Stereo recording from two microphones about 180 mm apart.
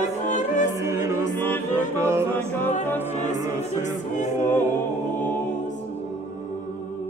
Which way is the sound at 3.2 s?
40° left (ahead or behind).